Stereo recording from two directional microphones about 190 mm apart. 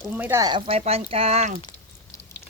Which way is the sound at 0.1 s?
10° right (ahead or behind).